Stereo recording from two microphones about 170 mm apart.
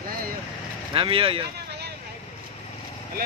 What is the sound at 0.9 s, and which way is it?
Speech, 30° right (ahead or behind).